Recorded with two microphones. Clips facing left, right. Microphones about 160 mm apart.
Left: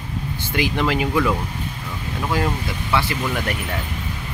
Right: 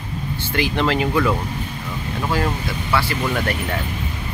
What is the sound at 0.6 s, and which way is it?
Speech, 10° left (ahead or behind).